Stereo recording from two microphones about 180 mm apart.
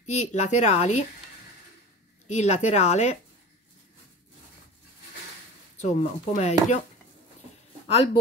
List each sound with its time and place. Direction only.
0.0 s speech: 40° left (ahead or behind)
2.2 s speech: 40° left (ahead or behind)
5.8 s speech: 40° left (ahead or behind)